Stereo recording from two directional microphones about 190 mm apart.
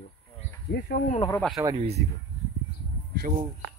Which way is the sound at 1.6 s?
20° right (ahead or behind).